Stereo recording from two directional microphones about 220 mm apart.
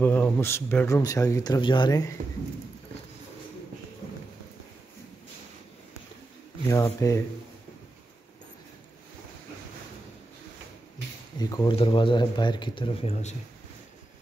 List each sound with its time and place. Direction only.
0.0 s speech: 10° left (ahead or behind)
6.7 s speech: 15° left (ahead or behind)
11.3 s speech: 15° left (ahead or behind)